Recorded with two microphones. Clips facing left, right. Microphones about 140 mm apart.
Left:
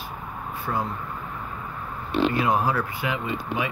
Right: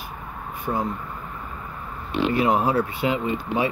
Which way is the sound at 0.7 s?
25° right (ahead or behind).